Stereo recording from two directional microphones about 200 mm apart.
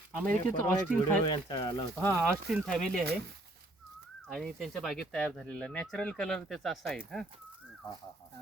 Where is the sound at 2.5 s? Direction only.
Centre (ahead or behind).